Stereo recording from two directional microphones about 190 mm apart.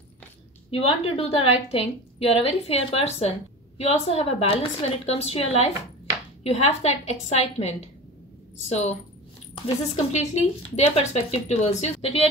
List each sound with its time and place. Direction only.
0.7 s a woman's voice: 30° left (ahead or behind)